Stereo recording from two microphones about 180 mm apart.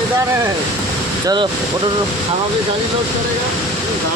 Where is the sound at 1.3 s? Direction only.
25° right (ahead or behind).